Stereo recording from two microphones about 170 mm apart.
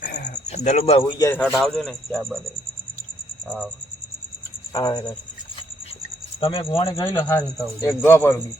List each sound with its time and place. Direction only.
0.0 s a sound: 50° left (ahead or behind)
1.2 s speech: 10° left (ahead or behind)
4.7 s speech: 25° left (ahead or behind)
6.4 s speech: 30° left (ahead or behind)
6.9 s speech: 20° left (ahead or behind)